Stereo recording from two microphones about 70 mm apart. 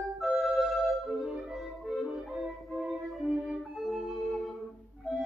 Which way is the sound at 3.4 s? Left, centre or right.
Centre.